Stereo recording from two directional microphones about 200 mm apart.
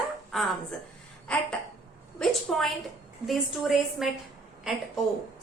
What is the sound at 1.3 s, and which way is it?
Speech, 5° left (ahead or behind).